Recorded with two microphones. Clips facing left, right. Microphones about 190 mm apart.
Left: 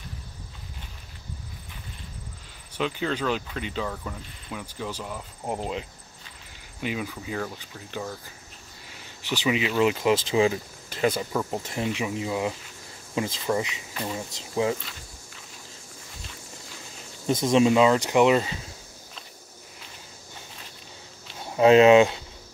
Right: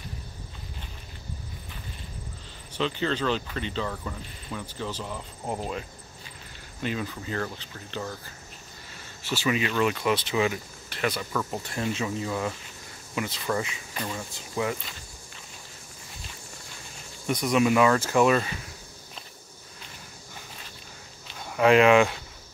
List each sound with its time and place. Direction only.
2.7 s speech: 5° left (ahead or behind)
5.6 s speech: 20° left (ahead or behind)
8.9 s speech: 15° left (ahead or behind)
13.2 s speech: 30° left (ahead or behind)
17.3 s speech: 25° left (ahead or behind)
21.5 s speech: 25° left (ahead or behind)